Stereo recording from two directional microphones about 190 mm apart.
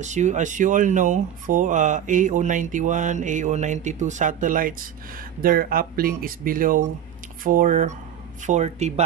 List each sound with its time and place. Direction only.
0.0 s speech: 40° right (ahead or behind)